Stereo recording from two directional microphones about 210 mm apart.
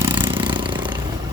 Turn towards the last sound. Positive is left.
turn(degrees=-20)  # may be behind; listen again after turning